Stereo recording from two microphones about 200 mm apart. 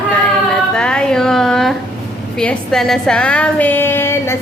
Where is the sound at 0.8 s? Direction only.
5° left (ahead or behind).